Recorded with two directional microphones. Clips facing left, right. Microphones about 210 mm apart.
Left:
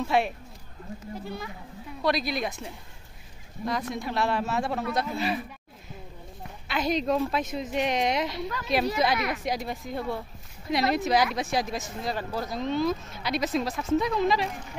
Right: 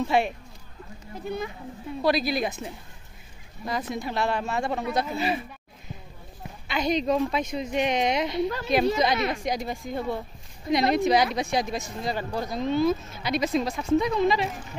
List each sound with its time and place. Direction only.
0.0 s speech: centre (ahead or behind)
1.2 s speech: 20° right (ahead or behind)
2.0 s speech: centre (ahead or behind)
3.9 s speech: centre (ahead or behind)
6.7 s speech: centre (ahead or behind)
9.1 s speech: 25° right (ahead or behind)
9.4 s speech: centre (ahead or behind)